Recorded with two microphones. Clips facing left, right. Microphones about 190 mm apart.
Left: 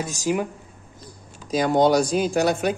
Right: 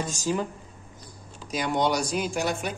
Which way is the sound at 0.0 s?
10° left (ahead or behind).